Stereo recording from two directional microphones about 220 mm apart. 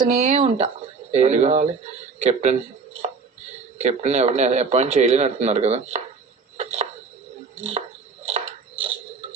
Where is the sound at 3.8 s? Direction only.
30° right (ahead or behind).